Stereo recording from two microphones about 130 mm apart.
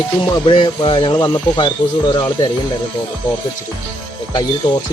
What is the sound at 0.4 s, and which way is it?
Speech, 40° left (ahead or behind).